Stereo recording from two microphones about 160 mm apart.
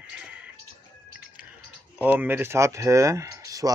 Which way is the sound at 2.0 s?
10° right (ahead or behind).